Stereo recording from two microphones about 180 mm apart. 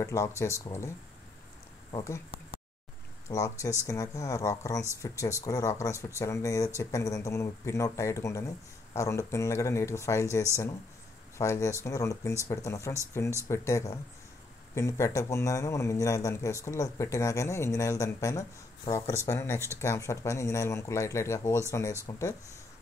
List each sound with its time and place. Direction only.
0.0 s speech: 15° left (ahead or behind)
3.3 s speech: 15° left (ahead or behind)